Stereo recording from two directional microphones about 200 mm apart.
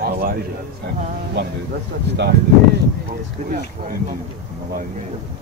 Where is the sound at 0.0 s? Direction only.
50° right (ahead or behind).